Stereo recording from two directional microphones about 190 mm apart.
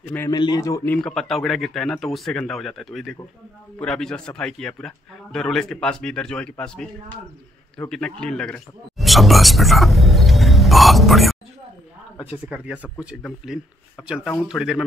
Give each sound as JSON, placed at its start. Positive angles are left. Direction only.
{"t": 0.3, "sound": "a man's voice", "side_deg": 20}
{"t": 0.9, "sound": "a man's voice", "side_deg": 5}
{"t": 12.4, "sound": "a man's voice", "side_deg": -5}
{"t": 14.0, "sound": "a man's voice", "side_deg": -5}